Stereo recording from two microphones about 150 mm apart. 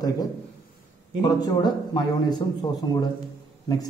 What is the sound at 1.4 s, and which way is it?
Speech, 25° left (ahead or behind).